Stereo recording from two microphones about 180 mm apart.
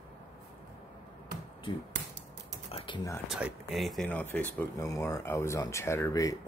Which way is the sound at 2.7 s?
25° left (ahead or behind).